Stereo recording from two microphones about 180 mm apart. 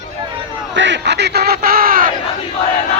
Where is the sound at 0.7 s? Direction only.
80° right; by 2.1 s 55° right (ahead or behind).